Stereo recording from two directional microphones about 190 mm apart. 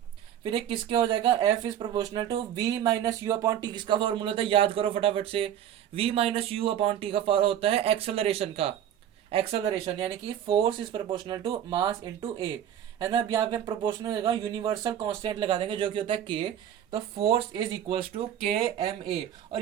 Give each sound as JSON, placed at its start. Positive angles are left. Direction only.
{"t": 0.4, "sound": "speech", "side_deg": -25}
{"t": 13.0, "sound": "speech", "side_deg": -20}